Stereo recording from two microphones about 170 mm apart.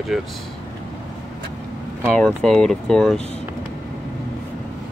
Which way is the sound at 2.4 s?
5° left (ahead or behind).